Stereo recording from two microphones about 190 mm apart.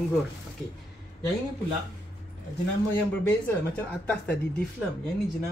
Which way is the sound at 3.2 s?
10° left (ahead or behind).